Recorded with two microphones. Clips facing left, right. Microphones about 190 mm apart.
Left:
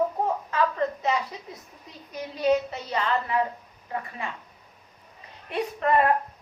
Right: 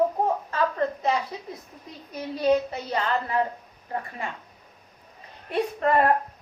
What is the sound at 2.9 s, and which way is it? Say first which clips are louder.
Speech: even; 35° right (ahead or behind).